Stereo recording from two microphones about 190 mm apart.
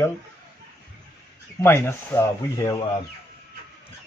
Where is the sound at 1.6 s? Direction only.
15° left (ahead or behind).